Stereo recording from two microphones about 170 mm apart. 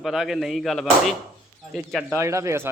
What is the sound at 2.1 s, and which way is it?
Speech, 15° right (ahead or behind).